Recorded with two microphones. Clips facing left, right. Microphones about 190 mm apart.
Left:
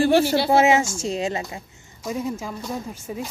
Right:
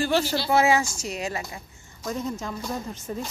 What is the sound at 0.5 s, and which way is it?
A woman's voice, 20° left (ahead or behind).